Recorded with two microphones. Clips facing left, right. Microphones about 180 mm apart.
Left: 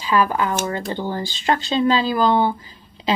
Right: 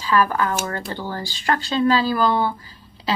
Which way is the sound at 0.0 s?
15° left (ahead or behind).